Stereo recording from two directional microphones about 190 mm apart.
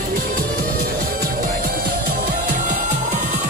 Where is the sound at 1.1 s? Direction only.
50° right (ahead or behind).